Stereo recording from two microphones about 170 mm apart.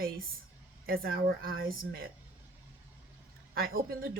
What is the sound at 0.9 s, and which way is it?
Speech, 60° right (ahead or behind).